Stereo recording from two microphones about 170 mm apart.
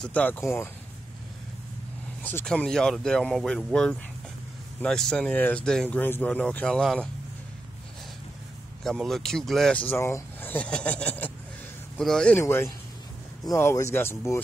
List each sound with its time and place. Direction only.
0.0 s speech: 10° left (ahead or behind)
2.2 s speech: 5° left (ahead or behind)
8.8 s speech: centre (ahead or behind)